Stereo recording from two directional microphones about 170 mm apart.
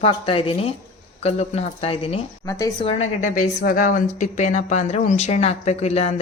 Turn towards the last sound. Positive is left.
turn(degrees=40)  # may be behind; listen again after turning